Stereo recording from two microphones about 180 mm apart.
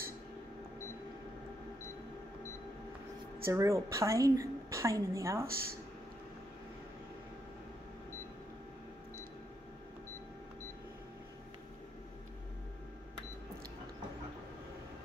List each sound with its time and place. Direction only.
3.4 s a woman's voice: 15° right (ahead or behind)